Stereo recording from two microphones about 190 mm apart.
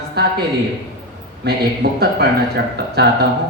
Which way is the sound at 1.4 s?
60° right (ahead or behind).